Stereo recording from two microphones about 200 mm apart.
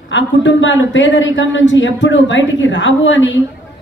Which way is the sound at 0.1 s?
65° left (ahead or behind).